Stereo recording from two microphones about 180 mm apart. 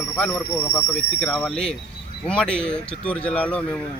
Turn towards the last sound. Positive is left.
turn(degrees=5)  # may be behind; listen again after turning